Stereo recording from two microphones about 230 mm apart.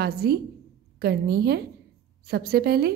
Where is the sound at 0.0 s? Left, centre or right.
Right.